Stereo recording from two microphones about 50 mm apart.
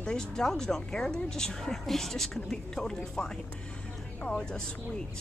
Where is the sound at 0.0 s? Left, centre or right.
Centre.